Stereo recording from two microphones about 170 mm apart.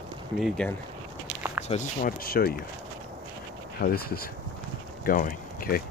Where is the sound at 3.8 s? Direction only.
65° left (ahead or behind).